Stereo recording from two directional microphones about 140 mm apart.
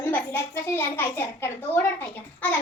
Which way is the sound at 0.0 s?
15° left (ahead or behind).